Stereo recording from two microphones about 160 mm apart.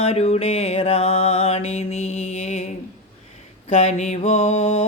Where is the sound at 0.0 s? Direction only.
40° left (ahead or behind).